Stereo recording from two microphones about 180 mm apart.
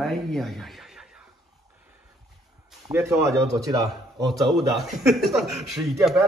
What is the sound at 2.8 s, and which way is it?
Speech, 15° right (ahead or behind).